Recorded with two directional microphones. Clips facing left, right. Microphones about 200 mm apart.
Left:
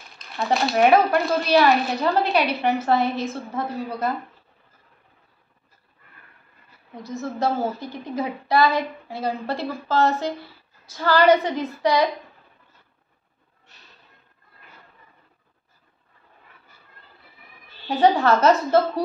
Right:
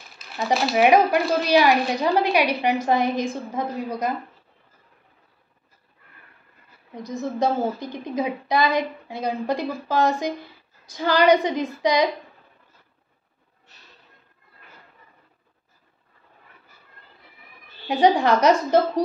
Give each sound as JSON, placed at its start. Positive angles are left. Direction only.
{"t": 0.2, "sound": "speech", "side_deg": -5}
{"t": 0.8, "sound": "a woman's voice", "side_deg": -15}
{"t": 7.0, "sound": "a woman's voice", "side_deg": -15}
{"t": 17.8, "sound": "a woman's voice", "side_deg": -15}